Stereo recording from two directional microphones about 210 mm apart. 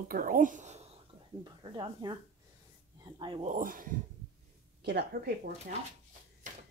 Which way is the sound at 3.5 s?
40° right (ahead or behind).